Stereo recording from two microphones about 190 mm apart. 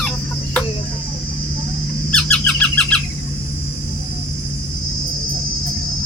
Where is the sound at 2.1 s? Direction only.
5° left (ahead or behind).